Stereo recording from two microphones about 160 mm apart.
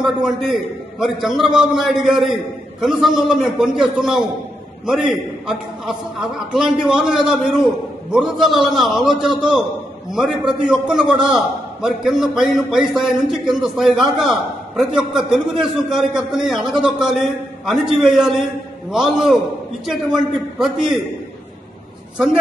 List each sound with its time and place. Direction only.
0.0 s a man's voice: 5° right (ahead or behind)